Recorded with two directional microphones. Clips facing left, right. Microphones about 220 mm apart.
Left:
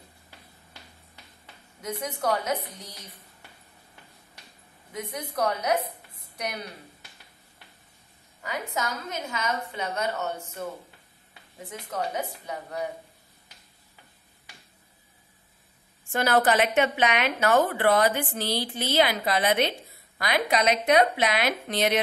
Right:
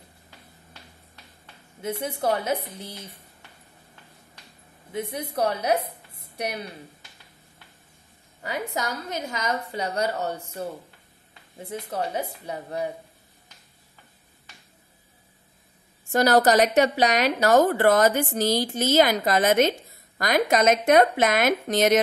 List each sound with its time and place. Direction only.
1.8 s a woman's voice: 30° right (ahead or behind)
4.9 s a woman's voice: 30° right (ahead or behind)
8.4 s a woman's voice: 35° right (ahead or behind)
11.7 s a woman's voice: 30° right (ahead or behind)
16.1 s a woman's voice: 40° right (ahead or behind)